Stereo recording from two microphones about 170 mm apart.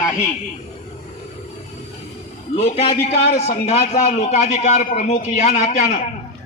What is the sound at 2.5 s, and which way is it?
A man's voice, 35° left (ahead or behind).